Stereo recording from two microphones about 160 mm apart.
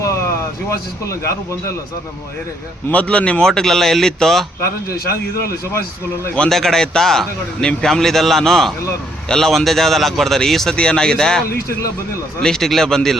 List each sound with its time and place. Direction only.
0.0 s a sound: 20° left (ahead or behind)
0.7 s speech: 20° left (ahead or behind)
2.9 s a man's voice: 10° left (ahead or behind)
5.4 s a man's voice: 20° left (ahead or behind)
6.2 s a man's voice: 5° left (ahead or behind)